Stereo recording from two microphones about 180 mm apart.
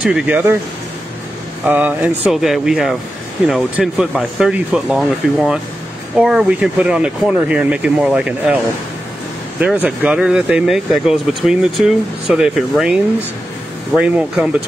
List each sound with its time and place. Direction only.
0.0 s speech: 5° right (ahead or behind)
1.6 s speech: 10° right (ahead or behind)
9.6 s speech: 5° right (ahead or behind)